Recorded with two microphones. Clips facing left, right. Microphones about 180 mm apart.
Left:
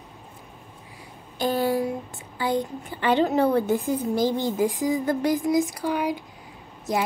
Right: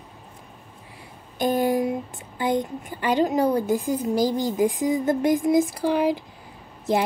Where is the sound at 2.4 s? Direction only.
20° right (ahead or behind).